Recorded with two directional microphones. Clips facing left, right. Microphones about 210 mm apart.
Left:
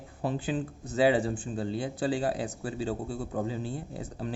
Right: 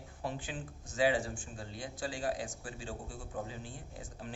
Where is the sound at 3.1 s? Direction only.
70° left (ahead or behind).